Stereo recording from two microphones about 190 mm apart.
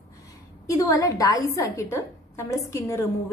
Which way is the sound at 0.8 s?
20° left (ahead or behind).